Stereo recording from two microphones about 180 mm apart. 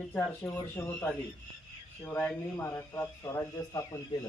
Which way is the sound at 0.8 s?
10° left (ahead or behind).